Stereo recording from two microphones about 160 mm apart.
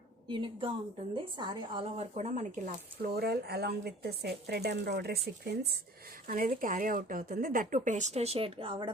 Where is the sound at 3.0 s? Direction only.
80° right; by 8.9 s 30° right (ahead or behind).